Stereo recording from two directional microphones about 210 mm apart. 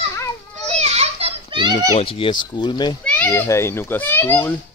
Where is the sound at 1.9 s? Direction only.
25° left (ahead or behind).